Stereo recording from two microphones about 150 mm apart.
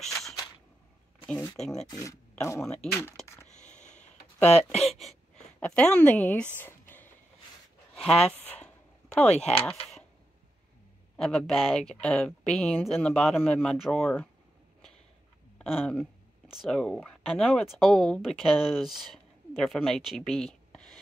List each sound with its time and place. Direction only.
1.2 s a woman's voice: 10° left (ahead or behind)
1.9 s speech: 20° left (ahead or behind)
2.6 s a woman's voice: 5° left (ahead or behind)
2.9 s a woman's voice: 15° left (ahead or behind)
3.4 s a sound: 50° left (ahead or behind)
4.6 s a woman's voice: 5° left (ahead or behind)
6.6 s a sound: 15° left (ahead or behind)
7.9 s speech: centre (ahead or behind)
8.4 s a sound: 10° left (ahead or behind)
9.5 s speech: centre (ahead or behind)
11.1 s a woman's voice: centre (ahead or behind)
14.0 s a woman's voice: 10° left (ahead or behind)
15.8 s a woman's voice: 10° left (ahead or behind)